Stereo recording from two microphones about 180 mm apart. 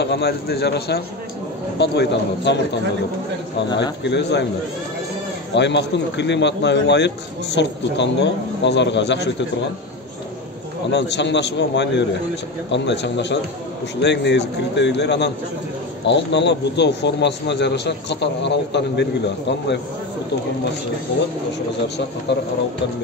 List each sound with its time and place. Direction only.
0.0 s a man's voice: 70° left (ahead or behind)
4.0 s a man's voice: 70° left (ahead or behind)
5.5 s a man's voice: 75° left (ahead or behind)
10.9 s a man's voice: 80° left